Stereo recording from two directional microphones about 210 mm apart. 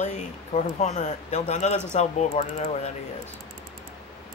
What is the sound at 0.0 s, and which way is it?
Speech, 35° left (ahead or behind).